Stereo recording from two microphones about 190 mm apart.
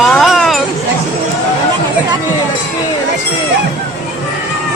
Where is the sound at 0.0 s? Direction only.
Centre (ahead or behind).